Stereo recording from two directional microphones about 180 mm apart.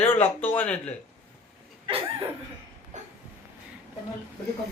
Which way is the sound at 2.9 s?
40° right (ahead or behind).